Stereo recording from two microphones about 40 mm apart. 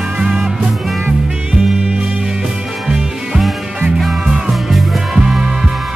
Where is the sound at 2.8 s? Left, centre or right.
Centre.